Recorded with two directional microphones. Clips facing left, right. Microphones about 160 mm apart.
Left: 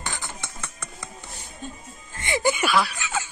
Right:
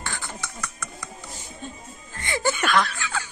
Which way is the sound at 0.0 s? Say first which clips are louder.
Even; 20° left (ahead or behind).